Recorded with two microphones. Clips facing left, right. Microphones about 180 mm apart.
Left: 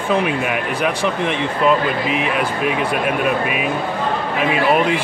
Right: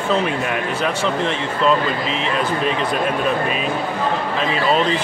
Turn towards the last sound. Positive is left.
turn(degrees=10)  # may be behind; listen again after turning